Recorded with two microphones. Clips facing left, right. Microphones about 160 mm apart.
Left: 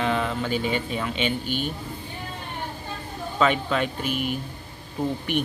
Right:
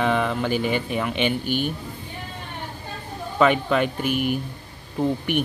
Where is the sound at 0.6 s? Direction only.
55° right (ahead or behind).